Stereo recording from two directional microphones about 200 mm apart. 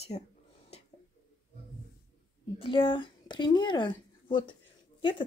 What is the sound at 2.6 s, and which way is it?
Speech, 25° left (ahead or behind).